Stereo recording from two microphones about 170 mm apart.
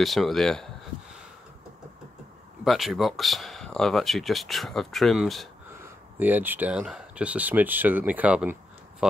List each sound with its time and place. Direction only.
0.0 s speech: centre (ahead or behind)
2.6 s speech: centre (ahead or behind)